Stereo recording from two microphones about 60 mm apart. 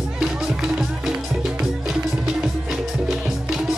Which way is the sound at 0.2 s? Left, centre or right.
Centre.